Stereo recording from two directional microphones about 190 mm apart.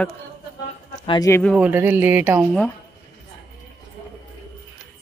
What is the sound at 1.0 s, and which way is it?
Speech, 20° left (ahead or behind).